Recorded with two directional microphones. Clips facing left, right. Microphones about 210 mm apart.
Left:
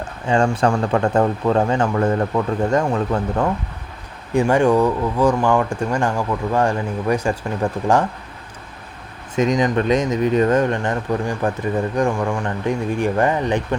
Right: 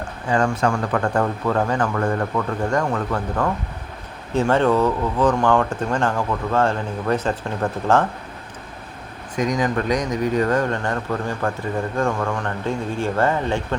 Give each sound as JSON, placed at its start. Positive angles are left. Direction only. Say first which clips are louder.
{"t": 0.3, "sound": "speech", "louder": "left 3 dB", "side_deg": 25}
{"t": 9.3, "sound": "speech", "louder": "left 4 dB", "side_deg": 25}